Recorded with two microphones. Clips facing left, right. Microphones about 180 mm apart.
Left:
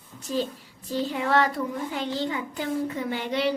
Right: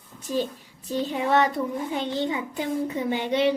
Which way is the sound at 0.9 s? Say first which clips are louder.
Right 1 dB; 20° right (ahead or behind).